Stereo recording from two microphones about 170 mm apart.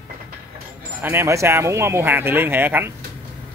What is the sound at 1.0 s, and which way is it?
Speech, 15° right (ahead or behind).